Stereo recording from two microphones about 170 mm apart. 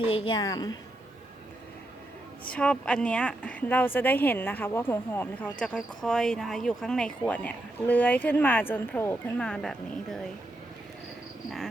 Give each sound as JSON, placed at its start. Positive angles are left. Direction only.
{"t": 0.1, "sound": "a woman's voice", "side_deg": 30}
{"t": 2.5, "sound": "a woman's voice", "side_deg": 5}